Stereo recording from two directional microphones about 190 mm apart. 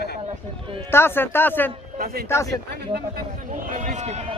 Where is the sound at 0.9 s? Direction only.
10° left (ahead or behind).